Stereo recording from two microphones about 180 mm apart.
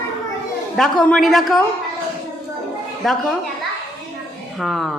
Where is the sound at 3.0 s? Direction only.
Centre (ahead or behind).